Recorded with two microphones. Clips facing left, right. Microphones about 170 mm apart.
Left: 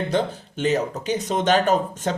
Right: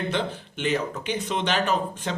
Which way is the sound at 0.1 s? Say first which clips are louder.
Left 5 dB; 40° left (ahead or behind).